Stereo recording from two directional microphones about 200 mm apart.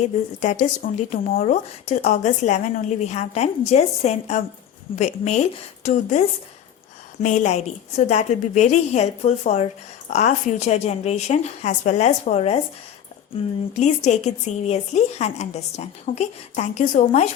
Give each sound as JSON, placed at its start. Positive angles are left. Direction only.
{"t": 0.4, "sound": "speech", "side_deg": 35}
{"t": 13.7, "sound": "speech", "side_deg": 35}